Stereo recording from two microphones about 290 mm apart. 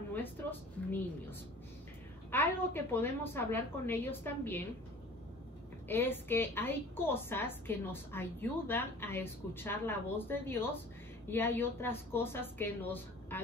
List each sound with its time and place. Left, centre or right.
0.1 s speech: centre
2.3 s a woman's voice: centre
5.9 s a woman's voice: centre